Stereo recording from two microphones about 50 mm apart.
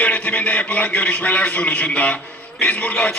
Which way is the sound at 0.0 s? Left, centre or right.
Left.